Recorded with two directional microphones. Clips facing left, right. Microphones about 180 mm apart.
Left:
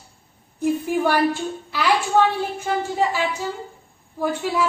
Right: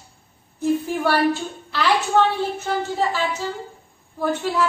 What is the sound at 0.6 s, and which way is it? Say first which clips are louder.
Speech: left 1 dB; 15° left (ahead or behind).